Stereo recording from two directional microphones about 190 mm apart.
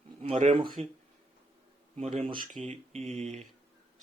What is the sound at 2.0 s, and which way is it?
Speech, 35° right (ahead or behind).